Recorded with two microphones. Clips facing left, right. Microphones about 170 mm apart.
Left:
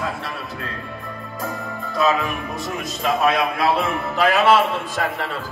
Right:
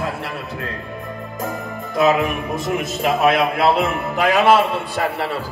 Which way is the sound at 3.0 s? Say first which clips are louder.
Right 2 dB; 25° right (ahead or behind).